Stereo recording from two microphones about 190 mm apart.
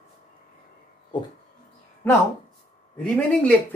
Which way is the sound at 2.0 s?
10° left (ahead or behind).